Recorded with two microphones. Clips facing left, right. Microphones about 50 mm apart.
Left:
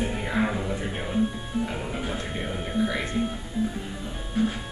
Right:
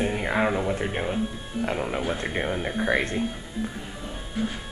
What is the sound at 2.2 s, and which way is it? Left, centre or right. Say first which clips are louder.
Speech: right 4 dB; right.